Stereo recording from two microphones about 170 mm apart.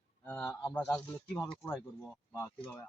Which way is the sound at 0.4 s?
20° left (ahead or behind).